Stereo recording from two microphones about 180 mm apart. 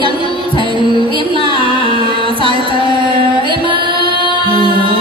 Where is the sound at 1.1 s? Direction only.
30° right (ahead or behind).